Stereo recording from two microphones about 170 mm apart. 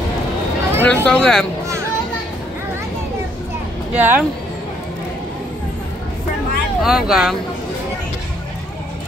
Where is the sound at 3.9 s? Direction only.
10° right (ahead or behind).